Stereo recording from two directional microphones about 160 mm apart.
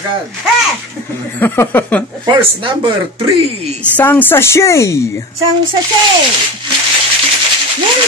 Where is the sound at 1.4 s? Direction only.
10° left (ahead or behind).